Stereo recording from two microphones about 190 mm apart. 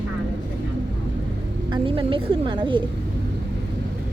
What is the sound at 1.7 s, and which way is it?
A woman's voice, 25° right (ahead or behind).